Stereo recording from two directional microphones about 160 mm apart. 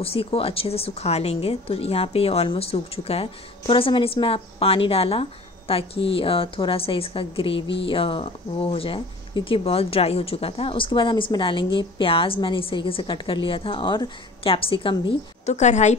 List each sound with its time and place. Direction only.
0.0 s a woman's voice: 35° left (ahead or behind)
15.5 s a woman's voice: 45° left (ahead or behind)